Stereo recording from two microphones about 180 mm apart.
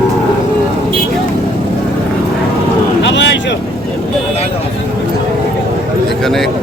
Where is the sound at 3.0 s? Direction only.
80° left.